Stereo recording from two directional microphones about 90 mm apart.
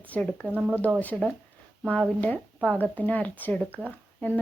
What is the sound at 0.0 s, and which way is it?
Speech, 15° left (ahead or behind).